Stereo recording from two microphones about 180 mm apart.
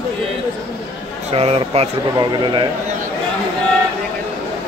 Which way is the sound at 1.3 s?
35° right (ahead or behind).